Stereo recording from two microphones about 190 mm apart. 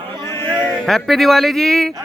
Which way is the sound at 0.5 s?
5° left (ahead or behind).